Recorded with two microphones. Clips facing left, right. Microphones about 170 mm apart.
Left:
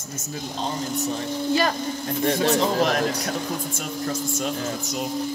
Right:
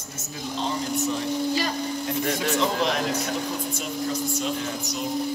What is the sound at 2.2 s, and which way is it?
Speech, 35° left (ahead or behind).